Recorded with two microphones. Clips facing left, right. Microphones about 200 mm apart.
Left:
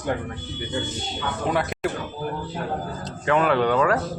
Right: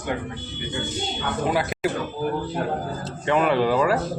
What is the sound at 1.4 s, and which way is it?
Speech, centre (ahead or behind).